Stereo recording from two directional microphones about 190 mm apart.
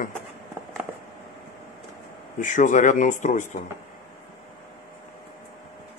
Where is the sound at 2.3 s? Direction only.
40° left (ahead or behind).